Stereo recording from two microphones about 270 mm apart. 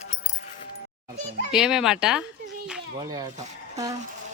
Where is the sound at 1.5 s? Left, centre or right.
Centre.